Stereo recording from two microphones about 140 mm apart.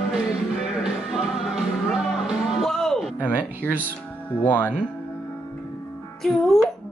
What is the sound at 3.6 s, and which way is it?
Speech, 10° left (ahead or behind).